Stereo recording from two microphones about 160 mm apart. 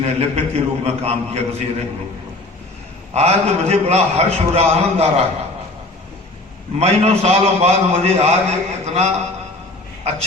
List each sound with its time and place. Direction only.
0.0 s a man's voice: 40° right (ahead or behind)
3.1 s a man's voice: 40° right (ahead or behind)
6.7 s a man's voice: 40° right (ahead or behind)